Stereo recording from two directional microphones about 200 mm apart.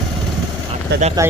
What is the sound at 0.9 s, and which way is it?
Speech, 55° right (ahead or behind).